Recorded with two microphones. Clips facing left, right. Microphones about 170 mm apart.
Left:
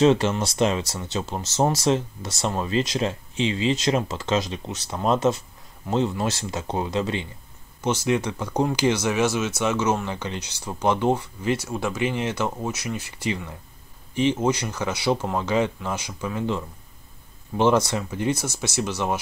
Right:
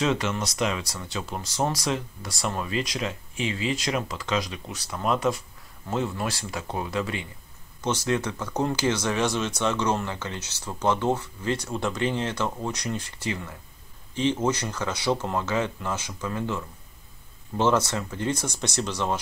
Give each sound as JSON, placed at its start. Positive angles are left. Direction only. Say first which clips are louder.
{"t": 0.0, "sound": "speech", "louder": "left 7 dB", "side_deg": 30}
{"t": 7.8, "sound": "speech", "louder": "left 3 dB", "side_deg": 10}